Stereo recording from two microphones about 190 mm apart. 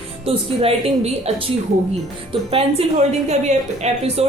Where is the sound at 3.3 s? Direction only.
35° right (ahead or behind).